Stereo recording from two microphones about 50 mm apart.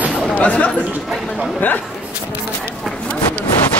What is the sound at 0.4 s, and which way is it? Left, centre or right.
A man's voice, left.